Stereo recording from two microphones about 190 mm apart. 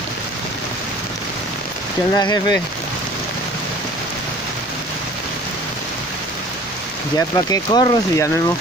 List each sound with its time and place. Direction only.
2.1 s speech: 20° left (ahead or behind)
7.2 s speech: 20° left (ahead or behind)